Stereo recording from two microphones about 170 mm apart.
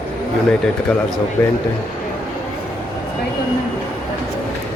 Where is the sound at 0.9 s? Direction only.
5° left (ahead or behind).